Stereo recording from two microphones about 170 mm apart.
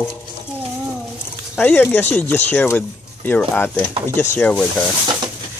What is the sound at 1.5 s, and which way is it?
Speech, 5° left (ahead or behind).